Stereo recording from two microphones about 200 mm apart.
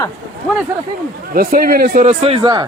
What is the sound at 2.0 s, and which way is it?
Speech, 30° right (ahead or behind).